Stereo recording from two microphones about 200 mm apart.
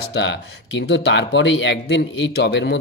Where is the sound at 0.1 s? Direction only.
60° left (ahead or behind).